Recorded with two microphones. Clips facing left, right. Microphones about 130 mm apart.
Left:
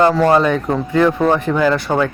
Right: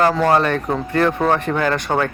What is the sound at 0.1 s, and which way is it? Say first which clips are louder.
Speech: left 3 dB; centre (ahead or behind).